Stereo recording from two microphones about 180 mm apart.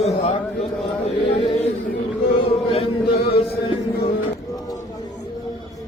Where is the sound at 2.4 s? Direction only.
30° left (ahead or behind).